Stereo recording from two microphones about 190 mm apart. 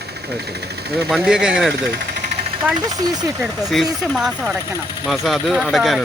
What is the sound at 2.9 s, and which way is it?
Speech, 20° right (ahead or behind).